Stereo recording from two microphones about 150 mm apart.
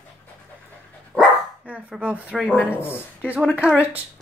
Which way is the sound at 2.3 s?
10° left (ahead or behind).